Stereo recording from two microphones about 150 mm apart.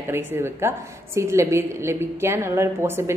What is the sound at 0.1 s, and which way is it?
A woman's voice, 15° right (ahead or behind).